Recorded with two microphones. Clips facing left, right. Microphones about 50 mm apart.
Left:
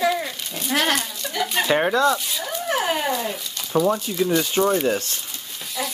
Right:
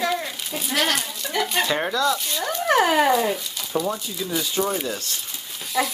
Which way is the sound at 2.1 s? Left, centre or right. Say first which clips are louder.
Even; centre.